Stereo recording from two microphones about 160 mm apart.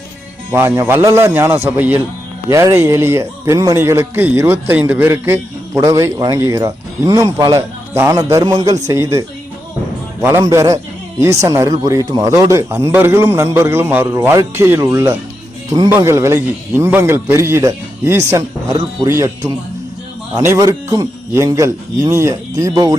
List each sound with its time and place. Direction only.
0.5 s a man's voice: 15° right (ahead or behind)
10.2 s a man's voice: 15° right (ahead or behind)